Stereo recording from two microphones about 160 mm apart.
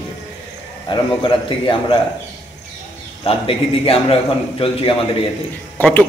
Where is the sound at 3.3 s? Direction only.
35° left (ahead or behind).